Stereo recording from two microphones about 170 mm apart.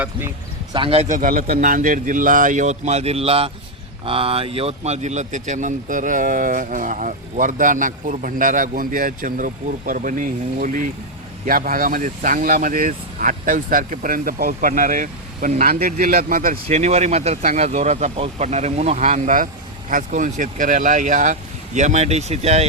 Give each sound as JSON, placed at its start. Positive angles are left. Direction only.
{"t": 0.0, "sound": "speech", "side_deg": -15}
{"t": 0.7, "sound": "speech", "side_deg": -30}
{"t": 16.6, "sound": "speech", "side_deg": -40}